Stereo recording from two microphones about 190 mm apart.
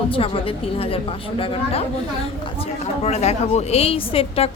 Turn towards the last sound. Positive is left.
turn(degrees=30)  # may be behind; listen again after turning